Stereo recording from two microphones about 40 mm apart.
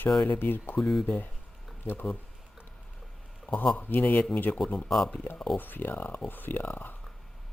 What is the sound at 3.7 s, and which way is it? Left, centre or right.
Speech, left.